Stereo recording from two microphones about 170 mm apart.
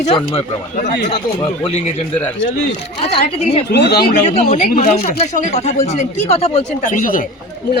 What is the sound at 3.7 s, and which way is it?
Speech, 75° left (ahead or behind).